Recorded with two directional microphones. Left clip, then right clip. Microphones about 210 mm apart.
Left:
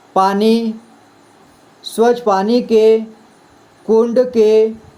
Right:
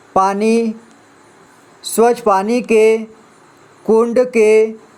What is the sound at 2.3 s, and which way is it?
Speech, 30° right (ahead or behind).